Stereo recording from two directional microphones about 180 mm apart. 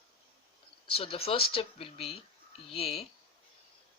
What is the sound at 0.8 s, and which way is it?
Speech, 30° left (ahead or behind).